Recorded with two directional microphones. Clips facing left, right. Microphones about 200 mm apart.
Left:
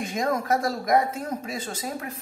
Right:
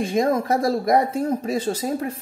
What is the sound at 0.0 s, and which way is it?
Speech, 30° right (ahead or behind).